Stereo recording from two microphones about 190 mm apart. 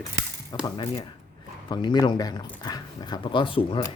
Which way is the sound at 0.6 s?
20° left (ahead or behind).